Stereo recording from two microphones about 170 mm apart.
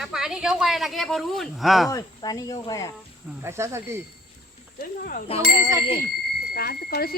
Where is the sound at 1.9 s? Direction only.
20° left (ahead or behind).